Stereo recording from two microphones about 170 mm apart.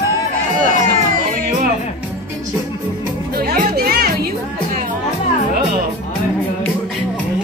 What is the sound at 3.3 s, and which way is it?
Music, 65° right (ahead or behind).